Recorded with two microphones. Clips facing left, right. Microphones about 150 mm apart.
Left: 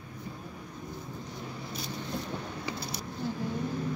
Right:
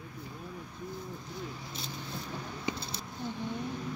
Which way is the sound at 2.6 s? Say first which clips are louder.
Even; 25° right (ahead or behind).